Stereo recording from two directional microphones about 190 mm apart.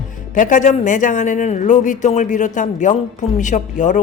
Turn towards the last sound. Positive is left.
turn(degrees=40)  # may be behind; listen again after turning